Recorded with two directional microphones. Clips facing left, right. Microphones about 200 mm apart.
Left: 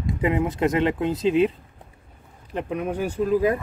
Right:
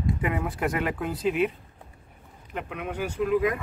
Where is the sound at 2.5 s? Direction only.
35° left (ahead or behind).